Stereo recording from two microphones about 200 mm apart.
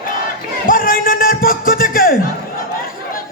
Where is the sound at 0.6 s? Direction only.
45° left (ahead or behind).